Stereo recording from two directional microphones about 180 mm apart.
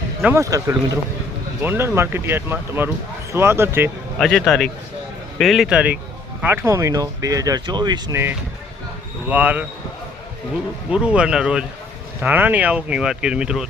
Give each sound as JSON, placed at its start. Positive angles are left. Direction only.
{"t": 0.3, "sound": "speech", "side_deg": -15}
{"t": 4.2, "sound": "speech", "side_deg": 5}
{"t": 9.3, "sound": "speech", "side_deg": -10}
{"t": 10.9, "sound": "speech", "side_deg": -5}